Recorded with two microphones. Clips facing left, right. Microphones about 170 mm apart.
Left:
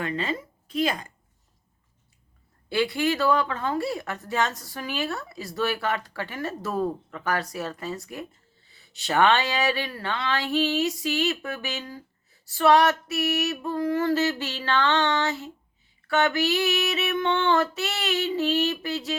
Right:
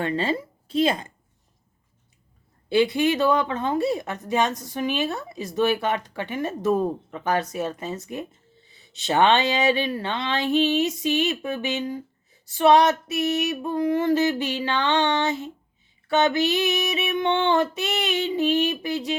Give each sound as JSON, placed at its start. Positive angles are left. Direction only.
{"t": 0.0, "sound": "speech", "side_deg": -30}
{"t": 2.6, "sound": "speech", "side_deg": -20}
{"t": 16.0, "sound": "a sound", "side_deg": -20}